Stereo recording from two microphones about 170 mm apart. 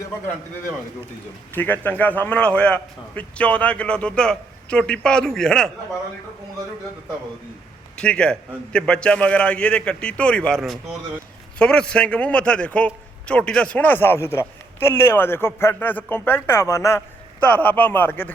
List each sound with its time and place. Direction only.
1.5 s a man's voice: 10° left (ahead or behind)
7.9 s a man's voice: 5° left (ahead or behind)